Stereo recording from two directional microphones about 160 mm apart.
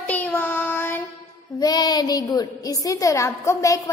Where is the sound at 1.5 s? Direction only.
25° left (ahead or behind).